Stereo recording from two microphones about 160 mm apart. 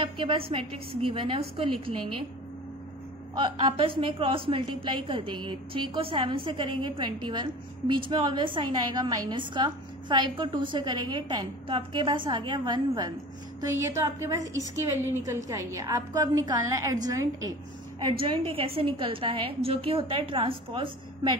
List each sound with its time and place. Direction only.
0.0 s a woman's voice: 30° right (ahead or behind)
3.3 s a woman's voice: 30° right (ahead or behind)
18.2 s a woman's voice: 35° right (ahead or behind)